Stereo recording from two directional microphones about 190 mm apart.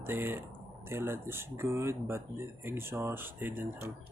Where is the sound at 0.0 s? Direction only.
10° right (ahead or behind).